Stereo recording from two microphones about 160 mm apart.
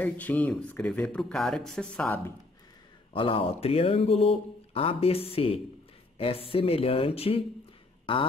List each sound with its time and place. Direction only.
0.0 s speech: 10° left (ahead or behind)
3.1 s speech: 35° left (ahead or behind)